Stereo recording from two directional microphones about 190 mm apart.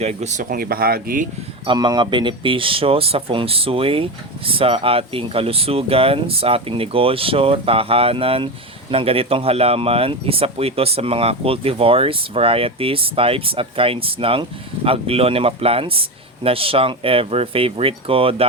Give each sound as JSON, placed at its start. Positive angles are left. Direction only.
{"t": 0.0, "sound": "speech", "side_deg": -35}
{"t": 1.6, "sound": "speech", "side_deg": -25}